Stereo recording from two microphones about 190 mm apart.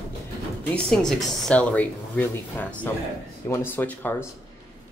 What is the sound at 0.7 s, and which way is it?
Speech, 5° left (ahead or behind).